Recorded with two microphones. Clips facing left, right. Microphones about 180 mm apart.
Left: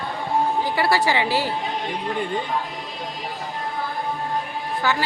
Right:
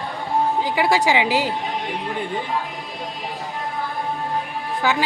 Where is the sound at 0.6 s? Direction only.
15° right (ahead or behind).